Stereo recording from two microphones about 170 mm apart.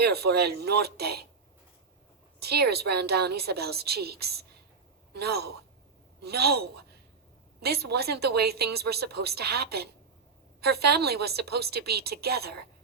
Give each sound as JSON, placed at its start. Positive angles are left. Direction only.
{"t": 0.0, "sound": "a woman's voice", "side_deg": -70}
{"t": 2.4, "sound": "a woman's voice", "side_deg": -70}